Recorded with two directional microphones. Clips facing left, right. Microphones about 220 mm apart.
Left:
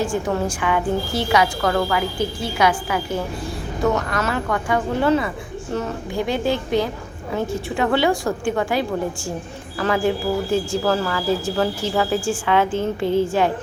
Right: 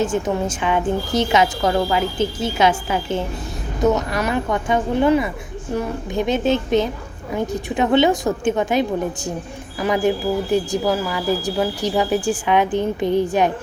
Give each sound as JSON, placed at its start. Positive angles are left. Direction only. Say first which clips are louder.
{"t": 0.0, "sound": "a woman's voice", "louder": "right 1 dB", "side_deg": -20}